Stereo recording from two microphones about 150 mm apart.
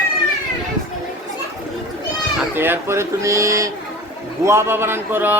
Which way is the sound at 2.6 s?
15° right (ahead or behind).